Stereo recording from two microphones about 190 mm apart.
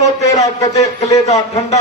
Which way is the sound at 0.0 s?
35° left (ahead or behind).